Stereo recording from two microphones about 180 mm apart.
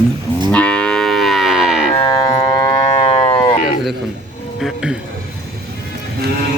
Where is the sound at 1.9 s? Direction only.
25° left (ahead or behind).